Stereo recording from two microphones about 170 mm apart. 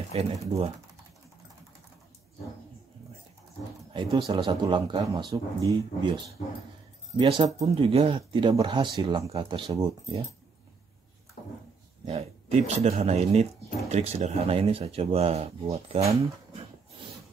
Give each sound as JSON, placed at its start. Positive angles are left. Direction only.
{"t": 0.1, "sound": "speech", "side_deg": -35}
{"t": 3.9, "sound": "speech", "side_deg": -25}
{"t": 7.2, "sound": "speech", "side_deg": -30}
{"t": 12.1, "sound": "speech", "side_deg": -35}